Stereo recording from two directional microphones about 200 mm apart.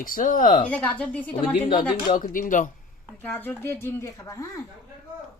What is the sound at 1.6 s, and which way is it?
Speech, 25° left (ahead or behind).